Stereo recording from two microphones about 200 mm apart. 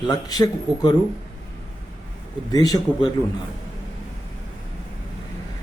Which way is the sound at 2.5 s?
20° left (ahead or behind).